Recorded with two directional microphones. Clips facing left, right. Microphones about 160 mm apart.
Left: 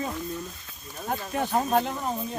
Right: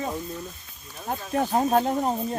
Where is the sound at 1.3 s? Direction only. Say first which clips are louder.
Right 3 dB; 35° right (ahead or behind).